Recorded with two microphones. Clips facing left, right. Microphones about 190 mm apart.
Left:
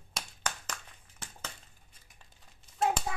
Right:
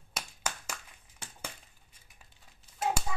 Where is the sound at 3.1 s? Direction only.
60° left (ahead or behind).